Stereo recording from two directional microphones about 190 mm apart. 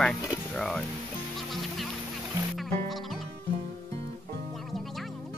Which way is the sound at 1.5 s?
Centre (ahead or behind).